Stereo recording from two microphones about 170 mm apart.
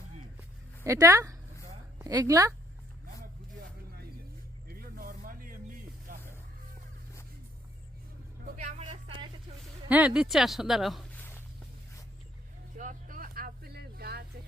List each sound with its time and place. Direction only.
0.9 s a woman's voice: 15° right (ahead or behind)
4.7 s vehicle: 55° right (ahead or behind)
8.6 s vehicle: 40° right (ahead or behind)
9.9 s speech: 5° right (ahead or behind)
11.2 s walk: 10° left (ahead or behind)
12.7 s a sound: 50° right (ahead or behind); by 14.3 s 65° right (ahead or behind)